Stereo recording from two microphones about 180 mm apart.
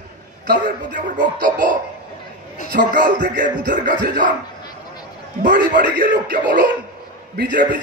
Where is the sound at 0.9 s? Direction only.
45° right (ahead or behind).